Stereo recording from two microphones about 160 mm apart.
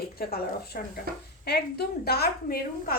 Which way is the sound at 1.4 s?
80° left.